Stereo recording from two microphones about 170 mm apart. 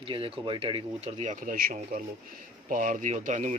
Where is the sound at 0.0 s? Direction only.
30° right (ahead or behind).